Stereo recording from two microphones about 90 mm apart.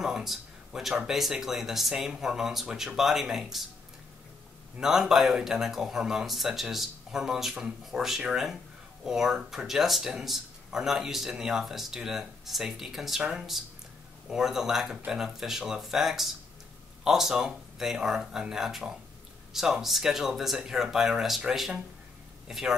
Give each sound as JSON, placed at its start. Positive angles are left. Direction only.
{"t": 0.0, "sound": "speech", "side_deg": -5}
{"t": 4.7, "sound": "speech", "side_deg": -5}